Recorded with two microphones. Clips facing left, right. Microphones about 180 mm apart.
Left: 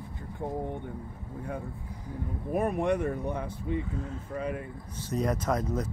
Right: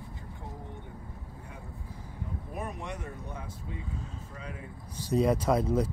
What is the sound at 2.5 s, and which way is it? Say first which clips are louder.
Speech: left 13 dB; 55° left (ahead or behind).